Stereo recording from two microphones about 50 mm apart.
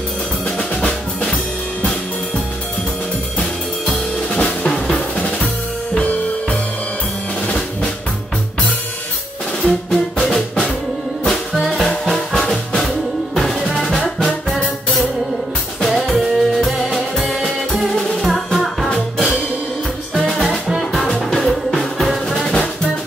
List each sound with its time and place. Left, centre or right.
0.6 s drum: centre
3.3 s drum: centre
7.4 s drum: centre
9.6 s music: centre
11.2 s music: centre
20.2 s music: centre
20.4 s music: centre
21.3 s music: centre